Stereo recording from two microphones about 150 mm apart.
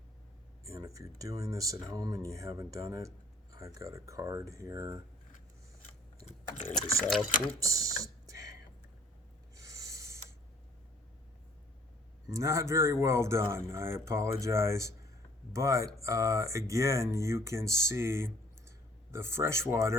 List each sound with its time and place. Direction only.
0.6 s speech: 20° right (ahead or behind)
6.5 s speech: 50° left (ahead or behind)
7.0 s speech: centre (ahead or behind)
7.6 s speech: 20° right (ahead or behind)
8.3 s a sound: 20° right (ahead or behind)
9.6 s a sound: 20° right (ahead or behind)
12.3 s speech: 20° right (ahead or behind)